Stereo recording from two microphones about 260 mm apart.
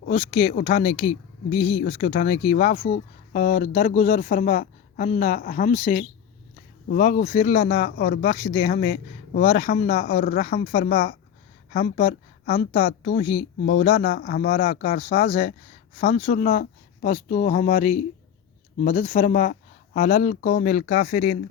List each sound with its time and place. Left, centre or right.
0.0 s a woman's voice: left